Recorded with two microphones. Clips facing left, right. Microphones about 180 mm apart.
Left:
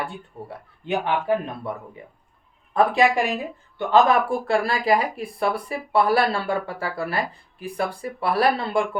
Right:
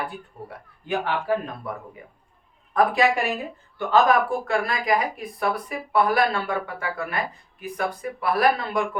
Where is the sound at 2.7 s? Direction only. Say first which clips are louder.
Left 1 dB; 25° left (ahead or behind).